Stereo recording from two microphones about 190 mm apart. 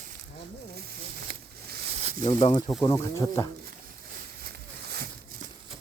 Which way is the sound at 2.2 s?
25° left (ahead or behind).